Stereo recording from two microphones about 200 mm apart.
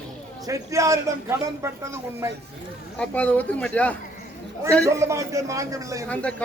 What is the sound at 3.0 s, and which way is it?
Speech, 5° left (ahead or behind).